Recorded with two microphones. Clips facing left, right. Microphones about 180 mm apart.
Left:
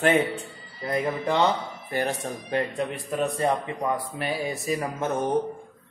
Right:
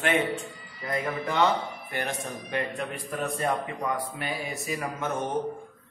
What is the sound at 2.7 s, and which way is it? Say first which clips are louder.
Music: left 5 dB; 20° left (ahead or behind).